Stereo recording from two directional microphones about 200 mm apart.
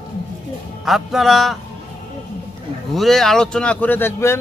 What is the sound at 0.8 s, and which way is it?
Speech, centre (ahead or behind).